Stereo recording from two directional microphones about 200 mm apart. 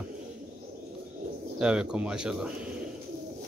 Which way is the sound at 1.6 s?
5° right (ahead or behind).